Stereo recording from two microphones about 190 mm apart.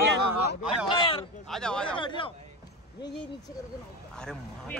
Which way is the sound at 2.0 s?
25° left (ahead or behind).